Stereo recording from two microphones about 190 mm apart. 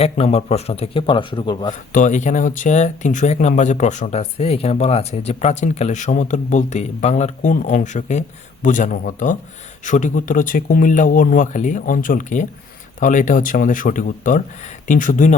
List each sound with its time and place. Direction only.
0.0 s a man's voice: 30° left (ahead or behind)
1.9 s speech: 40° left (ahead or behind)